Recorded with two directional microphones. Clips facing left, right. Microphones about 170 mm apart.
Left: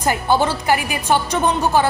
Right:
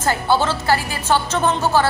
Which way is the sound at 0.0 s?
15° left (ahead or behind).